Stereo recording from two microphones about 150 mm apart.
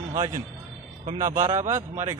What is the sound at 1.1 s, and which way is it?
Speech, 20° right (ahead or behind).